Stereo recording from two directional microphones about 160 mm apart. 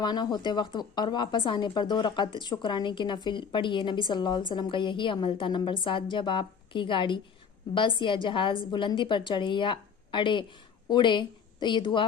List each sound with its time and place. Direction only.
0.0 s a woman's voice: 25° left (ahead or behind)